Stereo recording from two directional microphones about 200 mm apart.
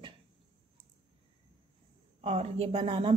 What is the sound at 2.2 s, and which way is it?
Speech, 30° right (ahead or behind).